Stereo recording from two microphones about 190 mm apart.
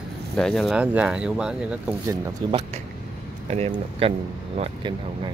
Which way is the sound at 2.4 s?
20° right (ahead or behind).